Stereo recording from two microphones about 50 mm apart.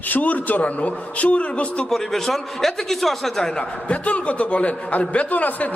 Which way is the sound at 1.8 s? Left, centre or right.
Centre.